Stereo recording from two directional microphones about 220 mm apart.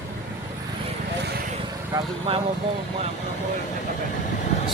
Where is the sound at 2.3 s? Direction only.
25° right (ahead or behind).